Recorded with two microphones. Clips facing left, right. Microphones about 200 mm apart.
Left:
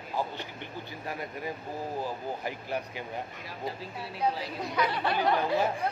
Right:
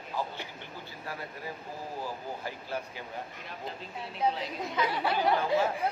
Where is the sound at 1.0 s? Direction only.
20° left (ahead or behind).